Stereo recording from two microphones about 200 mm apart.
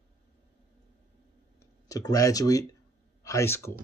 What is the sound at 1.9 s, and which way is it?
Speech, 15° left (ahead or behind).